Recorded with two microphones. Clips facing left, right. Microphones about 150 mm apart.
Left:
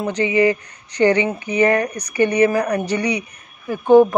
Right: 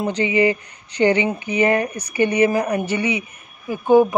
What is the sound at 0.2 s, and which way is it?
Speech, 35° left (ahead or behind).